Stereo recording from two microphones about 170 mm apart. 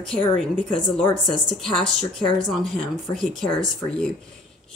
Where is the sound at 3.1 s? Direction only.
Centre (ahead or behind).